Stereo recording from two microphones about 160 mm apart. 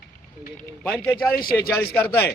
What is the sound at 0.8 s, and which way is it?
Speech, 10° left (ahead or behind).